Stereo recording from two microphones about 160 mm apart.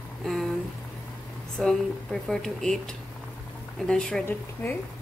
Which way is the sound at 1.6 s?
5° left (ahead or behind).